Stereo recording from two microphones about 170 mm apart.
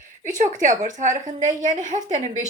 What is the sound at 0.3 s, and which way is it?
Speech, 50° right (ahead or behind).